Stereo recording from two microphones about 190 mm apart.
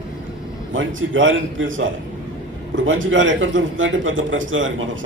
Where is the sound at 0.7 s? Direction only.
90° right.